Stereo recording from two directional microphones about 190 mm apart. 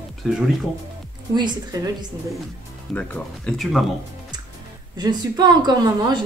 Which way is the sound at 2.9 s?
5° left (ahead or behind).